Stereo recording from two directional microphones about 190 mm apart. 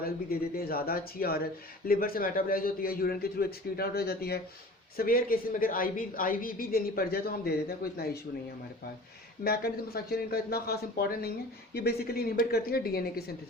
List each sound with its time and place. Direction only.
0.0 s a woman's voice: 55° left (ahead or behind)
9.4 s a woman's voice: 55° left (ahead or behind)